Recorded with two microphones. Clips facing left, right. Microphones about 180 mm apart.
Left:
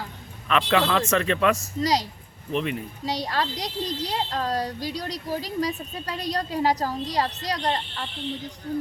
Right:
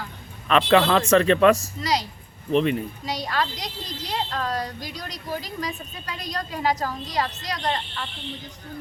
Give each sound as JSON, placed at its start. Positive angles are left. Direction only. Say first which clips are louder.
{"t": 0.4, "sound": "a man's voice", "louder": "right 4 dB", "side_deg": -35}
{"t": 1.8, "sound": "speech", "louder": "left 2 dB", "side_deg": 40}
{"t": 2.5, "sound": "a man's voice", "louder": "right 6 dB", "side_deg": -30}
{"t": 3.0, "sound": "speech", "louder": "even", "side_deg": 35}